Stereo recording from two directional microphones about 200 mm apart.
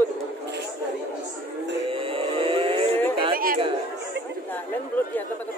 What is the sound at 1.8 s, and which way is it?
Vehicle, 25° right (ahead or behind).